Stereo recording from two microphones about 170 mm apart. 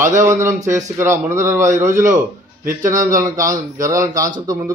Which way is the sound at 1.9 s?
50° right (ahead or behind).